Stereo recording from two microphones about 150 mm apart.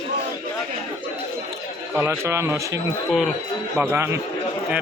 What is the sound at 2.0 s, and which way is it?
Speech, 15° right (ahead or behind).